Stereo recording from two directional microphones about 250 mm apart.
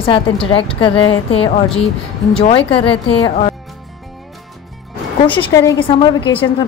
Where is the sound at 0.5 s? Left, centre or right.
Left.